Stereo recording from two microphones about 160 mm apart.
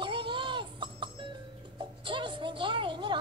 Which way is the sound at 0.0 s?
30° right (ahead or behind).